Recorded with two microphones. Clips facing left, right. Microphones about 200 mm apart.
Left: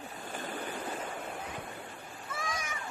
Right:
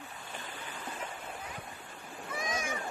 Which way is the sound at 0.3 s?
45° left (ahead or behind).